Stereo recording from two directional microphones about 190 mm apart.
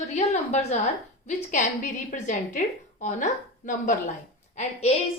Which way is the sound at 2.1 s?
40° left (ahead or behind).